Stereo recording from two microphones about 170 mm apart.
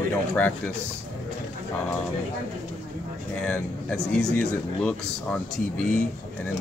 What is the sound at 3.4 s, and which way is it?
Speech, 5° left (ahead or behind).